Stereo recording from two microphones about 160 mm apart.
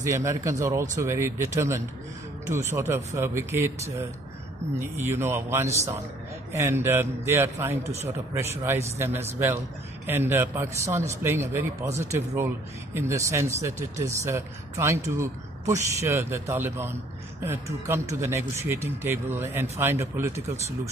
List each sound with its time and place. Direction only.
0.0 s a man's voice: 20° right (ahead or behind)